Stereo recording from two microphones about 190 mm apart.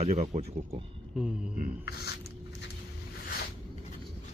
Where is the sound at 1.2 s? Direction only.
5° right (ahead or behind).